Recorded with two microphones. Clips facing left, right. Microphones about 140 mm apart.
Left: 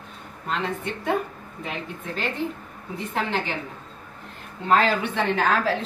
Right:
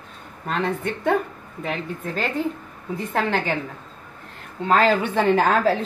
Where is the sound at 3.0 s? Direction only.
40° right (ahead or behind).